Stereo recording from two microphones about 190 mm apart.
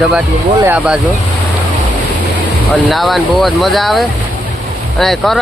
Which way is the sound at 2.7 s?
Centre (ahead or behind).